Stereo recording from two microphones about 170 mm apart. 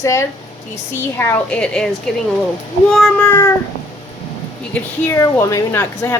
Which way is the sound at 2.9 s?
5° left (ahead or behind).